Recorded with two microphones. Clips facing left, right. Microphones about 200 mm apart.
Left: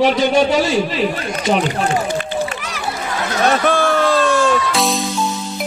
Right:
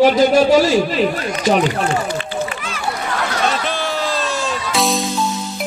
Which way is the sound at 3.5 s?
50° left (ahead or behind).